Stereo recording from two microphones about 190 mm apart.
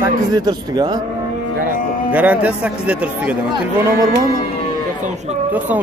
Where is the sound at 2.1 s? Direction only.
10° right (ahead or behind).